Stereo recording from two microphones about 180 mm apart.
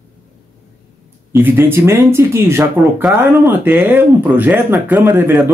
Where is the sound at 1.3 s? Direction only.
10° right (ahead or behind).